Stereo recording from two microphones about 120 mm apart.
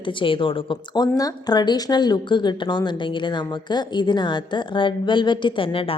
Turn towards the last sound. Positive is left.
turn(degrees=50)  # may be behind; listen again after turning